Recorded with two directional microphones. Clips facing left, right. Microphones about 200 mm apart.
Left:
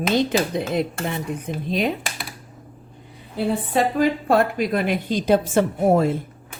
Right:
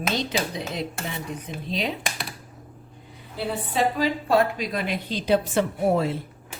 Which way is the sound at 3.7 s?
55° left (ahead or behind).